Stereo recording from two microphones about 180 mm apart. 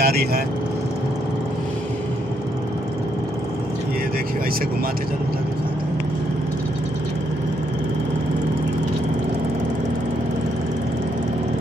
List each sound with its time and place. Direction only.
0.0 s speech: 60° right (ahead or behind)